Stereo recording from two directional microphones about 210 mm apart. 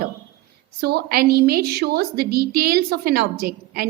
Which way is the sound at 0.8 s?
50° right (ahead or behind).